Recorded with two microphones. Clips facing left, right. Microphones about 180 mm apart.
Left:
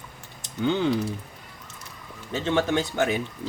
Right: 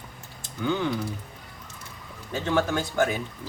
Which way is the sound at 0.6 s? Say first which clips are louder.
Left 3 dB; 25° left (ahead or behind).